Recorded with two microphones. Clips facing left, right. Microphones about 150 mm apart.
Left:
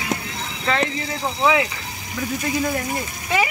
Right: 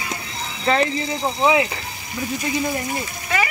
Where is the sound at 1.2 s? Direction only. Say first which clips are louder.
Right 1 dB; 20° right (ahead or behind).